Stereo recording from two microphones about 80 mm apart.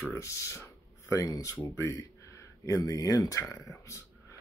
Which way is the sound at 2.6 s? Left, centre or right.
Left.